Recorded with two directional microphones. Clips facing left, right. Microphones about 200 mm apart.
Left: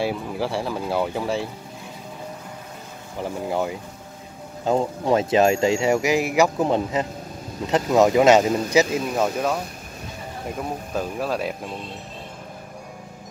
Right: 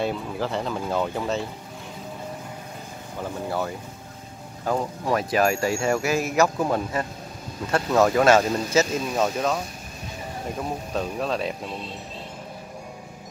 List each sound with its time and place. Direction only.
0.0 s speech: 10° left (ahead or behind)
3.2 s speech: 15° left (ahead or behind)
10.9 s speech: 5° left (ahead or behind)